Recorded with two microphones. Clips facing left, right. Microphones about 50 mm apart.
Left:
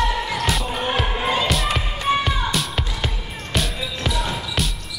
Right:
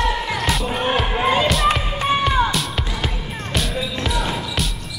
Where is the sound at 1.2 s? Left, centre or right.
Right.